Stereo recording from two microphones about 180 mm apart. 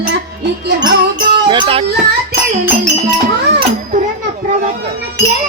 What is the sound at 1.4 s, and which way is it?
Music, 30° right (ahead or behind).